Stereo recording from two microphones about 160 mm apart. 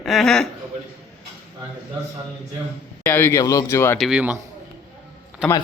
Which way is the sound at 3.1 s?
15° left (ahead or behind).